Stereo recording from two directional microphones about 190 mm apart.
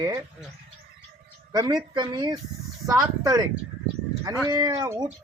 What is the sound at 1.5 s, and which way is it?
Speech, 20° right (ahead or behind).